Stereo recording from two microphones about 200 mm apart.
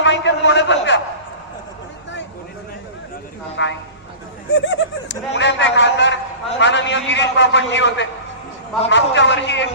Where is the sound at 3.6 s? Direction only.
65° left (ahead or behind).